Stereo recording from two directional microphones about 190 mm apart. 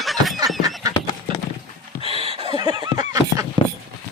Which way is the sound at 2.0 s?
30° right (ahead or behind).